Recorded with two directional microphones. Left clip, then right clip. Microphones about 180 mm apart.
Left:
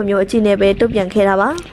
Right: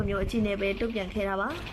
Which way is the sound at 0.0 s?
40° left (ahead or behind).